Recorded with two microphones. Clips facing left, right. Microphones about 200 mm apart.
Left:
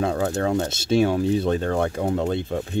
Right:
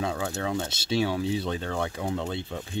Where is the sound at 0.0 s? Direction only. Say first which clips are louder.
Left 7 dB; 50° left (ahead or behind).